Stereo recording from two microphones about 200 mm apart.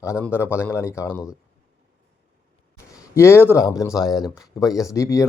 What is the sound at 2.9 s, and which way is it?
Speech, 15° left (ahead or behind).